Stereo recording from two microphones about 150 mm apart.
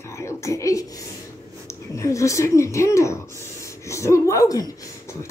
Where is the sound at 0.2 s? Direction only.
20° left (ahead or behind).